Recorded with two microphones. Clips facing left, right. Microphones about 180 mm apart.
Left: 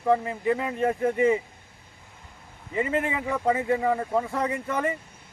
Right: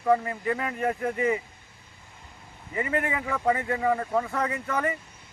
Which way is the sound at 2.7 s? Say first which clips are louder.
Left 2 dB; 25° left (ahead or behind).